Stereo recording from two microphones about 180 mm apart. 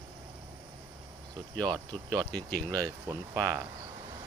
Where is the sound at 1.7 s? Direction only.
20° right (ahead or behind).